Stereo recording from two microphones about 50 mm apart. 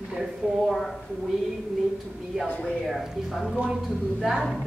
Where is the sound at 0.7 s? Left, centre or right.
Centre.